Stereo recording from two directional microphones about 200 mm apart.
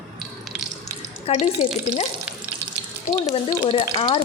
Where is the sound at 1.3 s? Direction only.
30° left (ahead or behind).